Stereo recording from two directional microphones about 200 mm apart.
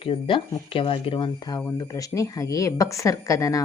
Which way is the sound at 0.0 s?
25° left (ahead or behind).